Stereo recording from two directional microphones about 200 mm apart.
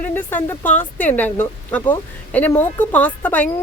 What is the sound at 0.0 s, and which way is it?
Speech, 10° left (ahead or behind).